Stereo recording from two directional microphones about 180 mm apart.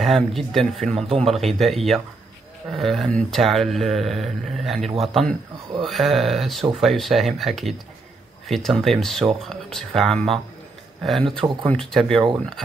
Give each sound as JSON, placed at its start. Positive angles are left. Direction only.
{"t": 0.0, "sound": "speech", "side_deg": 0}
{"t": 11.3, "sound": "speech", "side_deg": -30}
{"t": 11.7, "sound": "speech", "side_deg": 0}